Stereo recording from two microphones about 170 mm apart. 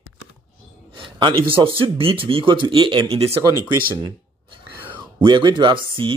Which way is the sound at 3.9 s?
20° right (ahead or behind).